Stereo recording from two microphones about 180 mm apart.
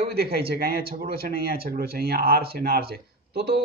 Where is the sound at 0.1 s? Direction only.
60° right (ahead or behind).